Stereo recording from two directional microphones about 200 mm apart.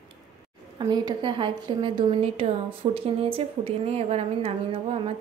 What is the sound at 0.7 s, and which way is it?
A woman's voice, 20° right (ahead or behind).